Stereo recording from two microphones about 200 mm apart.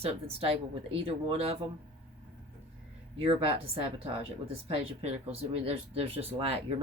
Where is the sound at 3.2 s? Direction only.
30° right (ahead or behind).